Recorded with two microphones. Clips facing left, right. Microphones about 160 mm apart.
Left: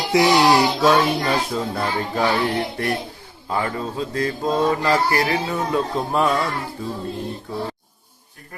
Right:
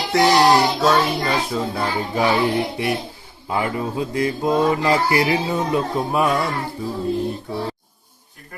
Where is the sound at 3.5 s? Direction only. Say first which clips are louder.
Right 2 dB; 15° right (ahead or behind).